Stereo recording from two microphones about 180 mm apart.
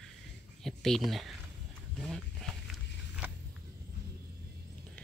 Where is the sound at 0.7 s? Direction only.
Centre (ahead or behind).